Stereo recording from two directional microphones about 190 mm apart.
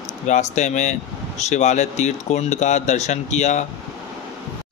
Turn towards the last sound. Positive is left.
turn(degrees=35)  # may be behind; listen again after turning